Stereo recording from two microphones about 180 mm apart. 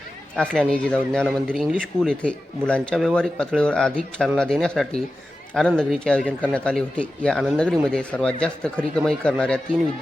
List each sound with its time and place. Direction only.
0.3 s speech: 5° left (ahead or behind)